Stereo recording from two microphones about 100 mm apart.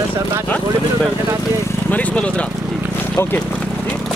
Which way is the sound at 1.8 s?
15° left (ahead or behind).